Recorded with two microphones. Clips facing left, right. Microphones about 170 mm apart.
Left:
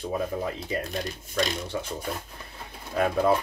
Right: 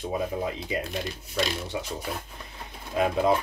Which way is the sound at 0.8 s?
Centre (ahead or behind).